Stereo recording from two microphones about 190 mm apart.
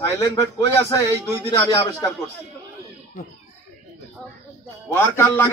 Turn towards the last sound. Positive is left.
turn(degrees=10)  # may be behind; listen again after turning